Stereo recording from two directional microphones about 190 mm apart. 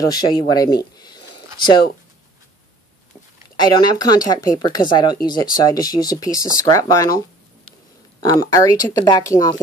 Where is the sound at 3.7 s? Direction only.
20° left (ahead or behind).